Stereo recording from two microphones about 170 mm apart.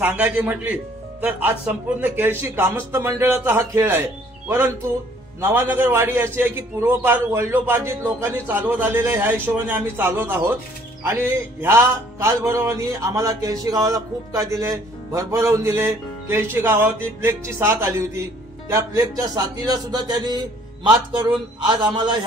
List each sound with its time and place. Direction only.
0.0 s a man's voice: 10° right (ahead or behind); by 22.1 s 25° right (ahead or behind)